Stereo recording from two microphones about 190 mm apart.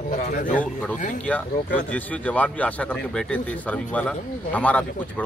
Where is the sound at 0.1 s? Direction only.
40° left (ahead or behind).